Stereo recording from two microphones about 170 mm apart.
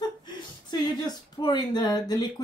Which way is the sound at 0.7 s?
25° left (ahead or behind).